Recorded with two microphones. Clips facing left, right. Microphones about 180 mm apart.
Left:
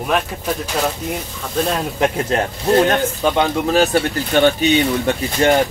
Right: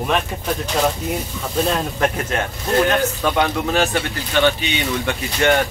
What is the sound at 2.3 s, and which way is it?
Speech, 35° left (ahead or behind).